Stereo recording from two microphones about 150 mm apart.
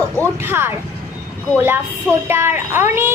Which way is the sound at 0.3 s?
15° right (ahead or behind).